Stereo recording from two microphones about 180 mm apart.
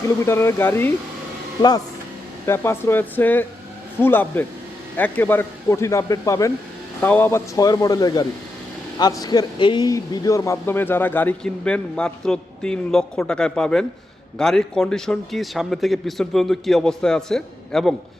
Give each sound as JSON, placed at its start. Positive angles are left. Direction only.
{"t": 0.3, "sound": "a man's voice", "side_deg": 15}
{"t": 2.5, "sound": "a man's voice", "side_deg": 15}